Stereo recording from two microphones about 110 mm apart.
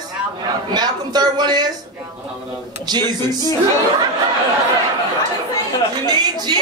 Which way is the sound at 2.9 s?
40° right (ahead or behind).